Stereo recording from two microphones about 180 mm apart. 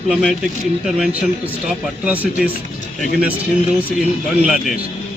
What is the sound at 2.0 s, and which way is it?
Speech, 10° right (ahead or behind).